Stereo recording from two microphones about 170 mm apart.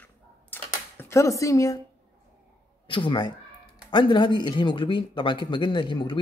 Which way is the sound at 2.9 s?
30° left (ahead or behind).